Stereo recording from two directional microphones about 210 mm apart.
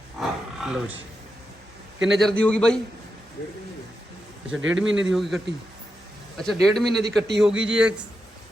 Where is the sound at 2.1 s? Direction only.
Centre (ahead or behind).